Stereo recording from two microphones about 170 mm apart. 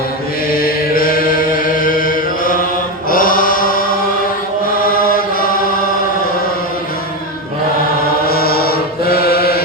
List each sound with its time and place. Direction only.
0.5 s chant: 60° left (ahead or behind)
8.3 s mantra: 65° left (ahead or behind)